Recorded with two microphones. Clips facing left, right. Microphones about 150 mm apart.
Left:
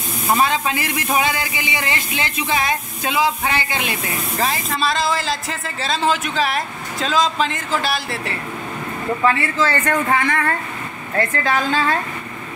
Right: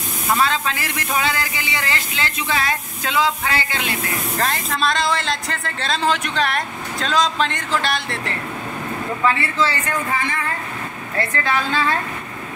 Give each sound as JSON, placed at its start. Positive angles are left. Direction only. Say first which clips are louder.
{"t": 0.4, "sound": "speech", "louder": "left 2 dB", "side_deg": 15}
{"t": 4.4, "sound": "speech", "louder": "left 1 dB", "side_deg": 0}
{"t": 9.6, "sound": "speech", "louder": "left 3 dB", "side_deg": 55}
{"t": 11.1, "sound": "a woman's voice", "louder": "left 2 dB", "side_deg": 45}